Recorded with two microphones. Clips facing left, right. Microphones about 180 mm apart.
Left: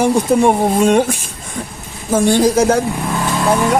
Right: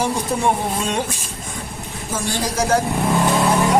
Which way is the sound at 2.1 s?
55° left (ahead or behind).